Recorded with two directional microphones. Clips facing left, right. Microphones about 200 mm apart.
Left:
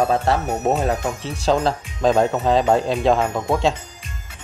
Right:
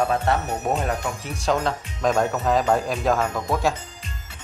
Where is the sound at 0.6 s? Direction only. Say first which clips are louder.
Left 5 dB; 25° left (ahead or behind).